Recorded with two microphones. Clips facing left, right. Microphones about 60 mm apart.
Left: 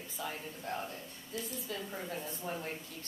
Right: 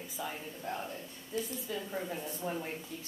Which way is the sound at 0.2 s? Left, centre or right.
Centre.